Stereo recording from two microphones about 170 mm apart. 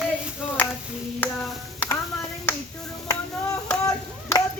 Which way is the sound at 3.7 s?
20° left (ahead or behind).